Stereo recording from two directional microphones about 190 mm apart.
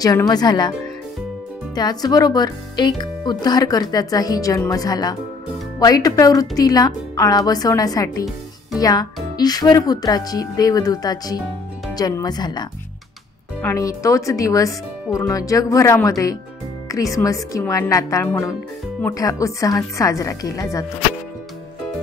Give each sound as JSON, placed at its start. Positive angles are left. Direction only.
{"t": 0.0, "sound": "speech", "side_deg": 20}
{"t": 1.8, "sound": "speech", "side_deg": 20}